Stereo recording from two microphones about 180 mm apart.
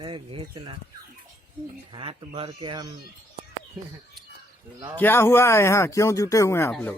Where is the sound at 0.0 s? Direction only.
30° right (ahead or behind).